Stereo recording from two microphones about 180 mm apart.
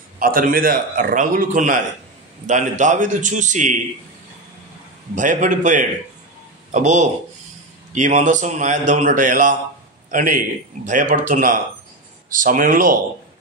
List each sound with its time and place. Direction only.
0.2 s a man's voice: 50° right (ahead or behind)
5.1 s a man's voice: 45° right (ahead or behind)